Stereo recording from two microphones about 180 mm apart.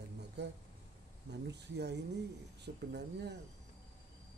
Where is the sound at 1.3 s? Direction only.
70° right (ahead or behind).